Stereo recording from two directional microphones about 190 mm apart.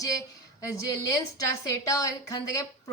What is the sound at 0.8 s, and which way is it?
A woman's voice, 15° left (ahead or behind).